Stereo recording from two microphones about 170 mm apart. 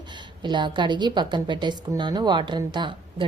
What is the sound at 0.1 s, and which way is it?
A woman's voice, 25° right (ahead or behind).